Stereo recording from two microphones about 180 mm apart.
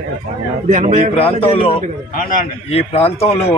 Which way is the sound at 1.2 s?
30° left (ahead or behind).